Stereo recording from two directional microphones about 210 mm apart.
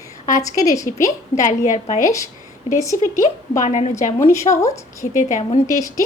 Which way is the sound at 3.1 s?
40° left (ahead or behind).